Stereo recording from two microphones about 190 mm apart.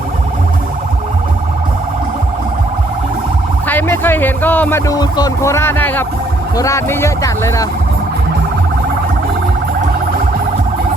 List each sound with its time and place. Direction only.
3.7 s music: 10° left (ahead or behind)
4.9 s speech: 20° left (ahead or behind)